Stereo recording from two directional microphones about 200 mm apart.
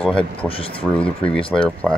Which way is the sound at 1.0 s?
5° left (ahead or behind).